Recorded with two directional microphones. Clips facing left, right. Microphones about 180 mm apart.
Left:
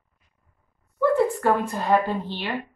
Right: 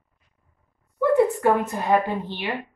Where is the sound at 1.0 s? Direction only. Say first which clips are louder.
Right 2 dB; 20° right (ahead or behind).